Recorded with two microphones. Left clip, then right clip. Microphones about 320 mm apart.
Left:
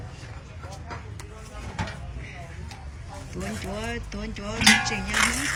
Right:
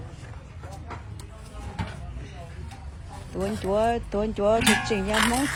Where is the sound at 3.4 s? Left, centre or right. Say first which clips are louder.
Right 10 dB; centre.